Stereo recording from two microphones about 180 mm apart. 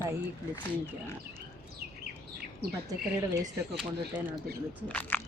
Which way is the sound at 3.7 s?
5° right (ahead or behind).